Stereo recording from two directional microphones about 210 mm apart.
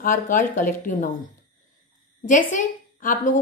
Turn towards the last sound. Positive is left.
turn(degrees=40)  # may be behind; listen again after turning